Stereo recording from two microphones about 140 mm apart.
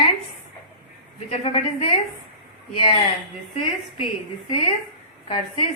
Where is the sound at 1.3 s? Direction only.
45° left (ahead or behind).